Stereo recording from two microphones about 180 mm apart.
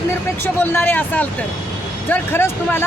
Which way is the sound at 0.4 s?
10° left (ahead or behind).